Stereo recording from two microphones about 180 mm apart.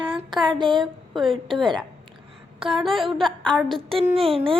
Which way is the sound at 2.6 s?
30° right (ahead or behind).